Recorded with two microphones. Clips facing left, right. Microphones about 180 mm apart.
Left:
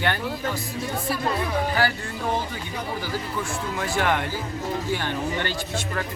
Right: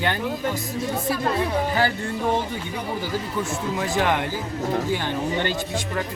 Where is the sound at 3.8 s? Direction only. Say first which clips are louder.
Right 1 dB; 20° right (ahead or behind).